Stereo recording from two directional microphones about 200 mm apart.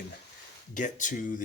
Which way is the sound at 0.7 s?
40° left (ahead or behind).